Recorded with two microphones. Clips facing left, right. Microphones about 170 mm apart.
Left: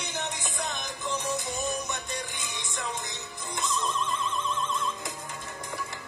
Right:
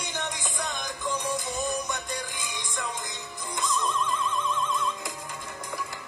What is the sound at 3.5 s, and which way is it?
Music, 25° left (ahead or behind).